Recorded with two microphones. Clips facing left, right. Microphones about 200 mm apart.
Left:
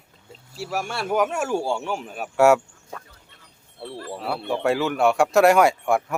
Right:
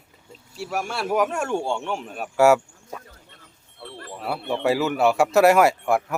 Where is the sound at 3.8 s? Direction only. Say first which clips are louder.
Left 5 dB; 35° left (ahead or behind).